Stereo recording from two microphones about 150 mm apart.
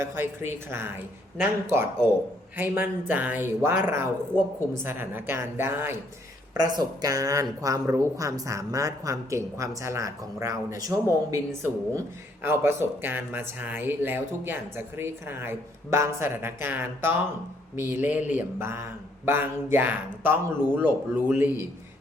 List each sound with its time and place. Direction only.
0.0 s speech: 15° right (ahead or behind)
2.6 s speech: 15° right (ahead or behind)